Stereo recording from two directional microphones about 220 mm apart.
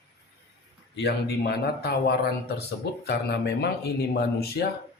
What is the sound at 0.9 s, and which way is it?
Speech, 50° left (ahead or behind).